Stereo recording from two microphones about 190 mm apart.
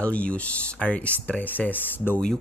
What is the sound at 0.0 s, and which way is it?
Speech, 5° left (ahead or behind).